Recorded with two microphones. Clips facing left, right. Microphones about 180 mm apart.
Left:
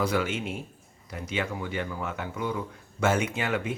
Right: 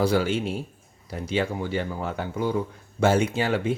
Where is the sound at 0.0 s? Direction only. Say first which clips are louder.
Right 5 dB; 30° right (ahead or behind).